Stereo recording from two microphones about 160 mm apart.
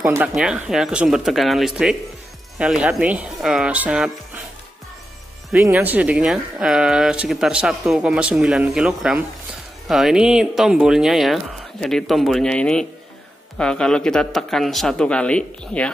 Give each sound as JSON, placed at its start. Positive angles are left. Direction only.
{"t": 0.0, "sound": "speech", "side_deg": -15}
{"t": 0.3, "sound": "speech", "side_deg": -5}
{"t": 5.5, "sound": "speech", "side_deg": -5}